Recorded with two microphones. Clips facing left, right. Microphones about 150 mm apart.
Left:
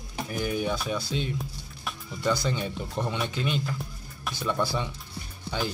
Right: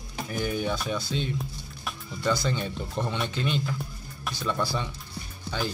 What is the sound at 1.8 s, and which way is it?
Music, centre (ahead or behind).